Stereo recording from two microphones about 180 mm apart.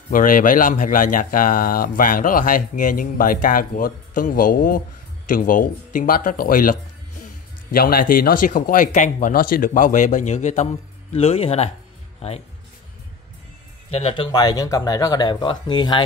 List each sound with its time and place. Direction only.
0.1 s speech: 50° left (ahead or behind)
13.8 s speech: 35° left (ahead or behind)